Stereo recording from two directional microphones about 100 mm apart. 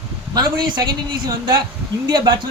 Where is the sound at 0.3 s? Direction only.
40° right (ahead or behind).